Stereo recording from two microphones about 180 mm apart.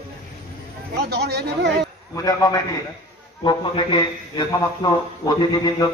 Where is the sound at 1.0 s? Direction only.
65° right (ahead or behind).